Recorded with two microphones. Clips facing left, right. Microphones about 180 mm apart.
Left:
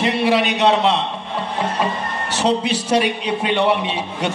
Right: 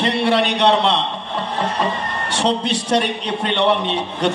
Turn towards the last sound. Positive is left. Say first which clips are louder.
# right 3 dB
turn(degrees=5)  # may be behind; listen again after turning